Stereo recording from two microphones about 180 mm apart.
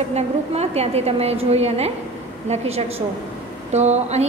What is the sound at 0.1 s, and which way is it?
A woman's voice, 35° right (ahead or behind).